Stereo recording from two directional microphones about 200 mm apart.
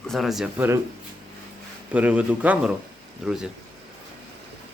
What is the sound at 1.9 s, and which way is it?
Speech, 5° right (ahead or behind).